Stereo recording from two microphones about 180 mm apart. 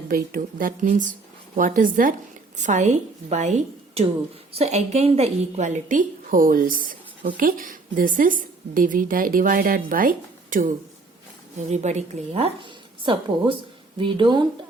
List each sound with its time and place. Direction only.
0.1 s a woman's voice: 50° right (ahead or behind); by 14.4 s 25° right (ahead or behind)